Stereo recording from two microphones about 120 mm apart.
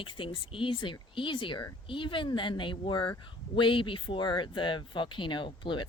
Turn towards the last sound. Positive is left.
turn(degrees=40)  # may be behind; listen again after turning